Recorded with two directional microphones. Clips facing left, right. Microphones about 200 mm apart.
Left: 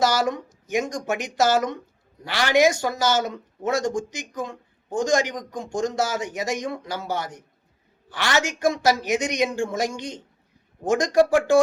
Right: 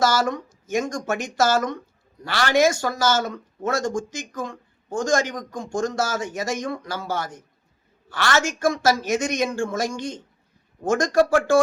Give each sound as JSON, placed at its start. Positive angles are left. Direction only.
{"t": 0.0, "sound": "a woman's voice", "side_deg": 20}